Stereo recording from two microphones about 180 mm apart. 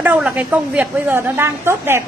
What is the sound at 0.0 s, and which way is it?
A woman's voice, 10° right (ahead or behind).